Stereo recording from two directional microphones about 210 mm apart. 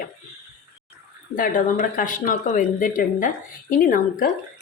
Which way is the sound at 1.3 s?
40° left (ahead or behind).